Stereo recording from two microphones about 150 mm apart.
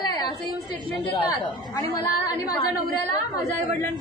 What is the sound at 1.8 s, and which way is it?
Speech, 25° left (ahead or behind).